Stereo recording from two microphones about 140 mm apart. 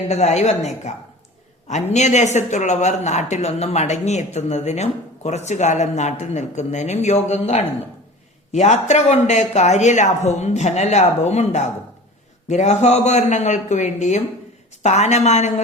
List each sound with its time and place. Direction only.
0.1 s speech: 50° left (ahead or behind)